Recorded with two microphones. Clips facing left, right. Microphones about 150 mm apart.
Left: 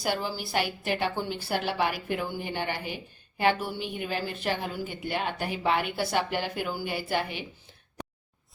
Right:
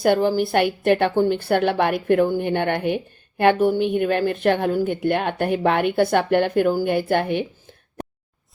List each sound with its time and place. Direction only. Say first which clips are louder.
0.0 s a woman's voice: right 13 dB; 55° right (ahead or behind)